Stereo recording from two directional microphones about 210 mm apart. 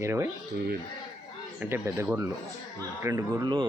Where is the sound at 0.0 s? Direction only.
15° right (ahead or behind).